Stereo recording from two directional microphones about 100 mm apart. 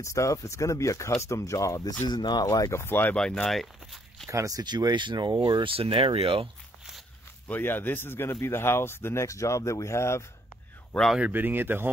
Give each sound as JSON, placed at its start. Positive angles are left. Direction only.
{"t": 0.0, "sound": "speech", "side_deg": 30}
{"t": 2.0, "sound": "speech", "side_deg": 45}
{"t": 2.4, "sound": "speech", "side_deg": 35}
{"t": 3.2, "sound": "speech", "side_deg": 5}
{"t": 4.3, "sound": "speech", "side_deg": -35}
{"t": 7.4, "sound": "speech", "side_deg": 20}
{"t": 10.9, "sound": "speech", "side_deg": 5}
{"t": 11.1, "sound": "speech", "side_deg": -15}